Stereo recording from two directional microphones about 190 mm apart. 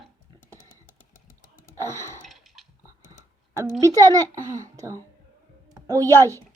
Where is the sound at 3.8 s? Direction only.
15° right (ahead or behind).